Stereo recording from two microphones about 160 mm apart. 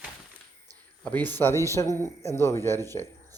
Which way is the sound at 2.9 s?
15° left (ahead or behind).